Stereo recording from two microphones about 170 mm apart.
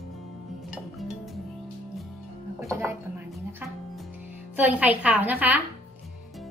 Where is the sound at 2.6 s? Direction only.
15° right (ahead or behind).